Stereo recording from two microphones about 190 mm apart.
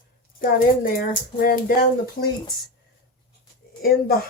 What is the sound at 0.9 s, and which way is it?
Speech, 50° left (ahead or behind).